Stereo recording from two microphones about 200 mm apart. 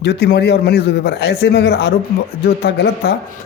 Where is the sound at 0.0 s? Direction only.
55° left (ahead or behind).